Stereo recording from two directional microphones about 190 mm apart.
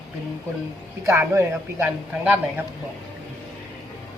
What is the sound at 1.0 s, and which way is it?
A man's voice, 15° right (ahead or behind).